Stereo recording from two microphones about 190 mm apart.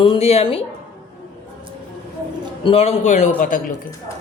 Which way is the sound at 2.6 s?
30° left (ahead or behind).